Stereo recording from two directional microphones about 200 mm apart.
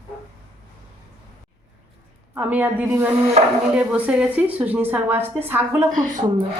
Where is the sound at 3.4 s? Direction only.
35° right (ahead or behind).